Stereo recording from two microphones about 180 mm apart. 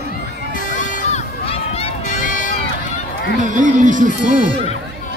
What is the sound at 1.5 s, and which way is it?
Run, 35° left (ahead or behind).